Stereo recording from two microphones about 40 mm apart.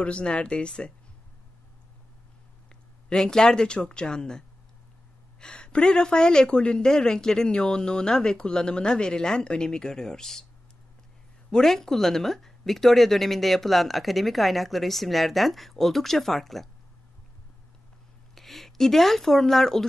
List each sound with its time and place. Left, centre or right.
0.0 s speech: left
2.7 s speech: centre
11.5 s a woman's voice: centre
18.3 s speech: centre